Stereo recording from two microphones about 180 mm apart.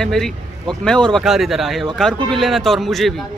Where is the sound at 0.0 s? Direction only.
Centre (ahead or behind).